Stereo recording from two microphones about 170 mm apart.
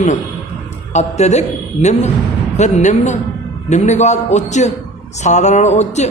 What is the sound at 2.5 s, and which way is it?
Speech, 45° left (ahead or behind).